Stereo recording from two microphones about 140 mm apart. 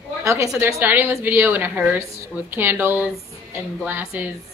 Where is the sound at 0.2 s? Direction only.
20° right (ahead or behind).